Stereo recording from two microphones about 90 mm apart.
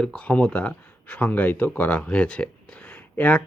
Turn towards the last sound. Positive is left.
turn(degrees=15)  # may be behind; listen again after turning